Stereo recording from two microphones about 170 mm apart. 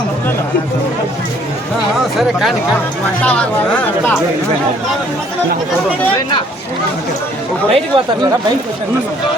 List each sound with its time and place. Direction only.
3.2 s speech: 5° left (ahead or behind)
7.7 s speech: 30° right (ahead or behind)